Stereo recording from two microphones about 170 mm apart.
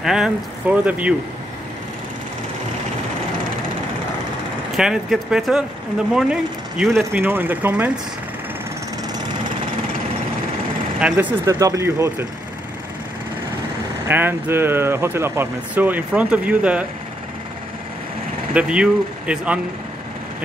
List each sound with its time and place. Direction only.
0.0 s speech: 5° right (ahead or behind)
4.7 s speech: 5° right (ahead or behind)
11.0 s speech: 10° right (ahead or behind)
14.0 s speech: 10° right (ahead or behind)
18.5 s speech: 5° right (ahead or behind)